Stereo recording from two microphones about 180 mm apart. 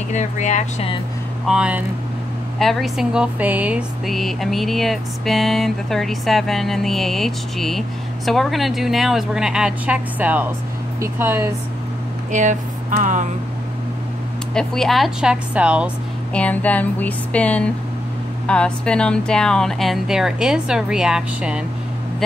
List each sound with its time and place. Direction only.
0.1 s speech: 40° left (ahead or behind)
1.5 s speech: 5° right (ahead or behind)
12.3 s speech: 40° right (ahead or behind)
14.5 s speech: 5° left (ahead or behind)
16.3 s a sound: 10° left (ahead or behind)
18.5 s speech: 5° left (ahead or behind)